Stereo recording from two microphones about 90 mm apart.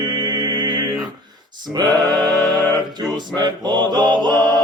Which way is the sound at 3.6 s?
55° right (ahead or behind).